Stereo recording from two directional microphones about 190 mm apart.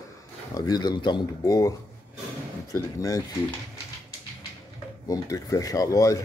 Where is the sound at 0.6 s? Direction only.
20° left (ahead or behind).